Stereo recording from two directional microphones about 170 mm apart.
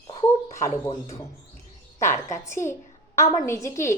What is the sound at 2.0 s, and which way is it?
A woman's voice, 15° left (ahead or behind).